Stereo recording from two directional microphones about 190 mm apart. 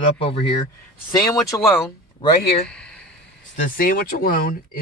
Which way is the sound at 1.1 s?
20° left (ahead or behind).